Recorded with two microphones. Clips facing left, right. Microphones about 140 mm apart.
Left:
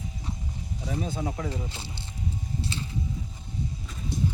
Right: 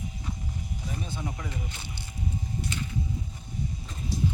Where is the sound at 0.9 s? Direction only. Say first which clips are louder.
Left 6 dB; 90° left.